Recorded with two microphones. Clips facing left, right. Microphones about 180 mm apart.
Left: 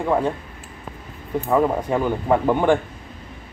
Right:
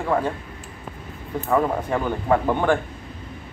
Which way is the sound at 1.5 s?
10° left (ahead or behind).